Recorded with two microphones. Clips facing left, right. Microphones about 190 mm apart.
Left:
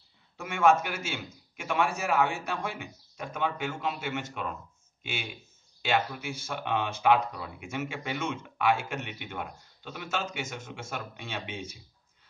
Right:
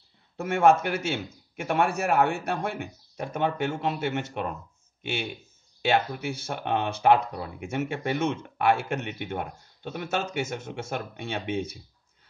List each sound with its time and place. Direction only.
0.4 s a man's voice: 55° right (ahead or behind)
5.8 s a sound: 60° right (ahead or behind)
6.2 s a man's voice: 65° right (ahead or behind)